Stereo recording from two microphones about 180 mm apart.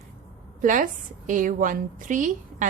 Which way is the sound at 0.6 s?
45° right (ahead or behind).